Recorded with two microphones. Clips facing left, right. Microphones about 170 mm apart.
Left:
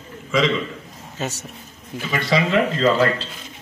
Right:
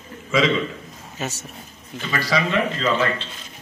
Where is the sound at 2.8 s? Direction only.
40° left (ahead or behind).